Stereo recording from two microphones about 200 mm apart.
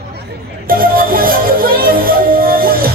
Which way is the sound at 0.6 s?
45° right (ahead or behind).